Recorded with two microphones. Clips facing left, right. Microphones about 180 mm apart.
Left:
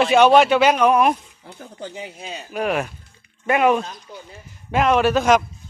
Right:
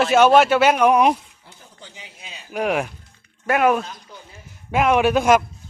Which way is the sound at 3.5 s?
Centre (ahead or behind).